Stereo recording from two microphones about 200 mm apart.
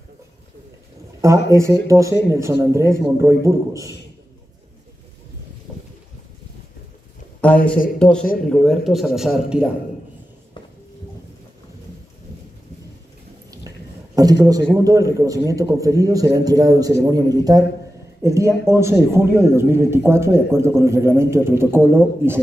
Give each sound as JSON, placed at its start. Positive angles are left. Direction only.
{"t": 1.5, "sound": "speech", "side_deg": -15}
{"t": 7.4, "sound": "a man's voice", "side_deg": 5}
{"t": 13.5, "sound": "a sound", "side_deg": -20}
{"t": 14.4, "sound": "a man's voice", "side_deg": -20}